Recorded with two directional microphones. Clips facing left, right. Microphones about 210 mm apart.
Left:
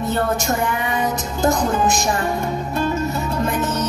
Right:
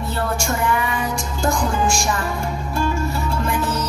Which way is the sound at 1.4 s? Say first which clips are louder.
Left 3 dB; 20° left (ahead or behind).